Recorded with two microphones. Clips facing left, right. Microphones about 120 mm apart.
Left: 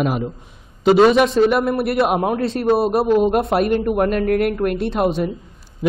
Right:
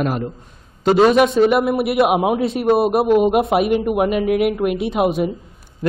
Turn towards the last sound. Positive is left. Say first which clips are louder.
# right 1 dB
turn(degrees=-5)  # may be behind; listen again after turning